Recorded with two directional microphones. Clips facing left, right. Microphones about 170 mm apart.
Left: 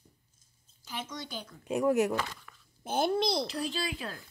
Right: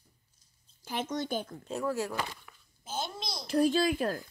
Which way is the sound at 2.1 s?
10° right (ahead or behind).